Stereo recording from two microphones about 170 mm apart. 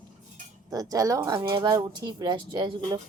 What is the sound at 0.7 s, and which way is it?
Speech, 20° right (ahead or behind).